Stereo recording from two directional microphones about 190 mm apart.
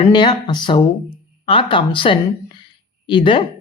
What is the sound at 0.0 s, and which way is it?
A woman's voice, 25° left (ahead or behind).